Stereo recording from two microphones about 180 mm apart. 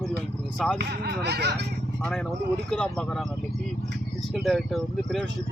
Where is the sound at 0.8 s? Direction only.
65° right (ahead or behind).